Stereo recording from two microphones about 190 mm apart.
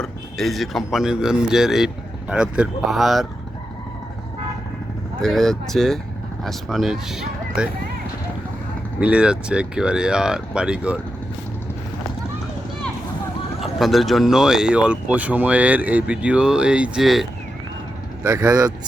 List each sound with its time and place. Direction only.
0.0 s speech: centre (ahead or behind)
5.2 s speech: centre (ahead or behind)
9.0 s speech: 5° right (ahead or behind)
13.6 s speech: centre (ahead or behind)
18.2 s speech: 15° right (ahead or behind)